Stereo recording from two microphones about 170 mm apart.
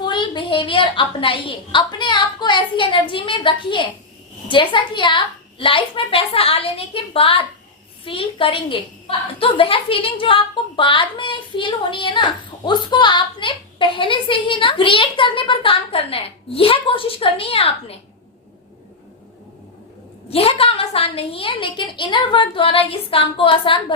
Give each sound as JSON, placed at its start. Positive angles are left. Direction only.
{"t": 0.0, "sound": "a woman's voice", "side_deg": 25}
{"t": 20.3, "sound": "a woman's voice", "side_deg": 35}